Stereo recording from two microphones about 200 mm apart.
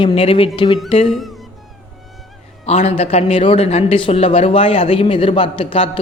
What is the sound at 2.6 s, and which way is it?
A man's voice, 30° left (ahead or behind).